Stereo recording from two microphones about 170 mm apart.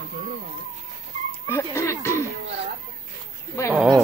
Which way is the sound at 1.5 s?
15° left (ahead or behind).